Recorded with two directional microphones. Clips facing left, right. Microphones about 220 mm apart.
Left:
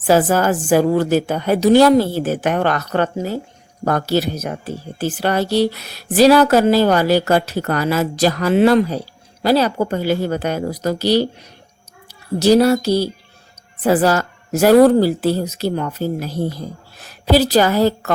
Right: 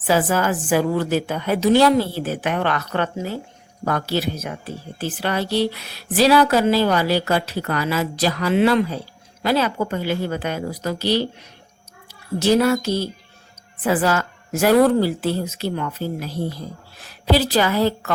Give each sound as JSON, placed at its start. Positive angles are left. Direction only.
{"t": 0.1, "sound": "a woman's voice", "side_deg": 40}